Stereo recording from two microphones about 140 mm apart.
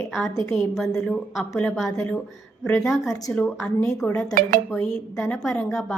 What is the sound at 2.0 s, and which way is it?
Dishes, 10° left (ahead or behind).